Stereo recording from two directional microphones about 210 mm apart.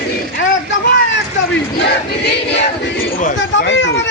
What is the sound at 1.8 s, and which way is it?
Choir, 55° left (ahead or behind).